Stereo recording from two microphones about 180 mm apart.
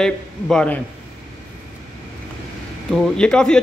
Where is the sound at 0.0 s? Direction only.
5° left (ahead or behind).